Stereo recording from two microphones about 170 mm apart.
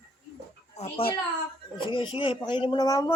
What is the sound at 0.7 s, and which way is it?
Speech, 35° left (ahead or behind).